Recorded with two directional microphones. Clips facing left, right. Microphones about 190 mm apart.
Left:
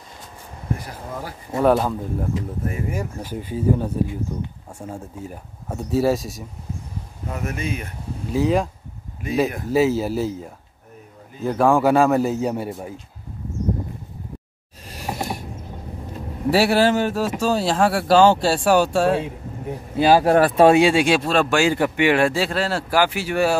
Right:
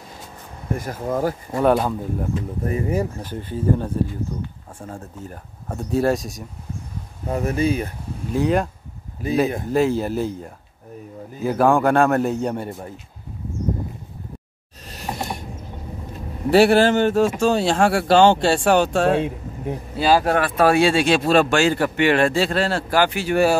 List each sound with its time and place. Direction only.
0.7 s speech: 45° right (ahead or behind)
1.6 s speech: centre (ahead or behind)
2.7 s speech: 35° right (ahead or behind)
3.2 s speech: 10° left (ahead or behind)
7.2 s speech: 35° right (ahead or behind)
8.3 s speech: centre (ahead or behind)
9.7 s speech: 5° left (ahead or behind)
14.9 s a sound: 10° left (ahead or behind)
16.4 s speech: 5° left (ahead or behind)
20.2 s speech: 35° left (ahead or behind)
20.6 s speech: 15° left (ahead or behind)
21.2 s speech: 5° right (ahead or behind)
21.5 s speech: 10° left (ahead or behind)